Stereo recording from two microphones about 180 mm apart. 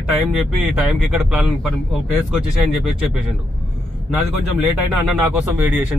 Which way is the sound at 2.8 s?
5° right (ahead or behind).